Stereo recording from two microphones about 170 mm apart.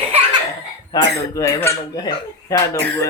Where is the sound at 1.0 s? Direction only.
90° right.